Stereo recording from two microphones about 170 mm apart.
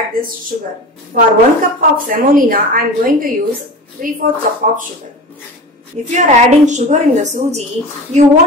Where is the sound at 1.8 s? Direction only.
55° right (ahead or behind).